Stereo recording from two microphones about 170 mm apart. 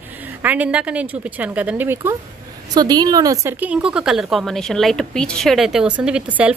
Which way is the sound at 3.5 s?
5° right (ahead or behind).